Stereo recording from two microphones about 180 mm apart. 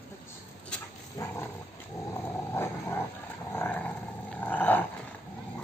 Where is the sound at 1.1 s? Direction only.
15° left (ahead or behind).